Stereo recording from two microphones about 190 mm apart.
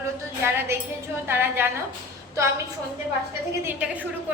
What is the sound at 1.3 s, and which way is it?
Speech, 10° right (ahead or behind).